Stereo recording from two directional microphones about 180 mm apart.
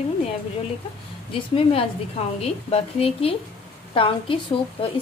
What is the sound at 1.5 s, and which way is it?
A woman's voice, 30° left (ahead or behind).